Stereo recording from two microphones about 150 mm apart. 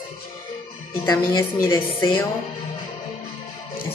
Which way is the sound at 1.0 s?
25° left (ahead or behind).